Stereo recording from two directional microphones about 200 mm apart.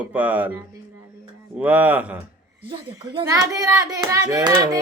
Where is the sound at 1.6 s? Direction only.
10° right (ahead or behind).